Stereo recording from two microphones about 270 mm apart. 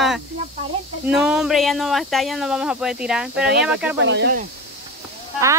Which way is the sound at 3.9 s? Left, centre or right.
Right.